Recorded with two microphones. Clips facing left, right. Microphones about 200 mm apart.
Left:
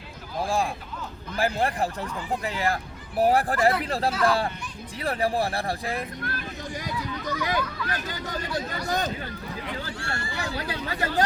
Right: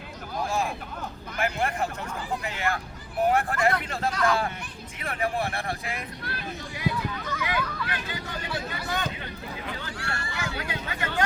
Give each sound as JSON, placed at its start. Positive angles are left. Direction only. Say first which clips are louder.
{"t": 0.4, "sound": "speech", "louder": "left 2 dB", "side_deg": 30}
{"t": 6.2, "sound": "speech", "louder": "left 2 dB", "side_deg": 45}
{"t": 9.8, "sound": "speech", "louder": "left 2 dB", "side_deg": 25}